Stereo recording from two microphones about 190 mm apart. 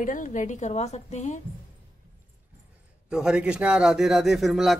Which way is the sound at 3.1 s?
5° right (ahead or behind).